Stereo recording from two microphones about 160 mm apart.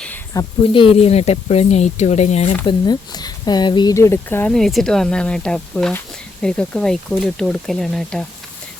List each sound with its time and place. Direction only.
0.6 s speech: 35° left (ahead or behind)
2.6 s speech: 25° left (ahead or behind)
3.9 s speech: 15° left (ahead or behind)
4.5 s speech: centre (ahead or behind)